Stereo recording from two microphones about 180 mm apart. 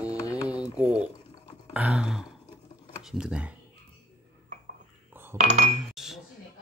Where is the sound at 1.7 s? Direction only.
5° right (ahead or behind).